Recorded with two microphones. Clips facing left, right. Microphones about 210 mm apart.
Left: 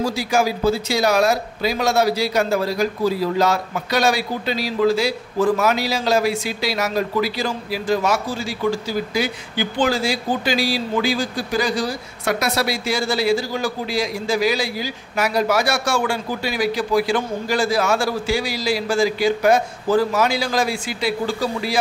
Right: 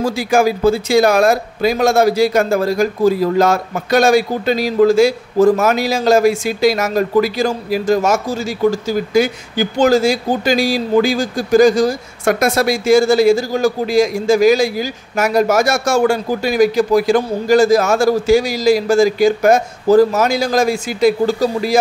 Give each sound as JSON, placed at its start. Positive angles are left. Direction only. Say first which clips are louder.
{"t": 0.0, "sound": "speech", "louder": "right 5 dB", "side_deg": -55}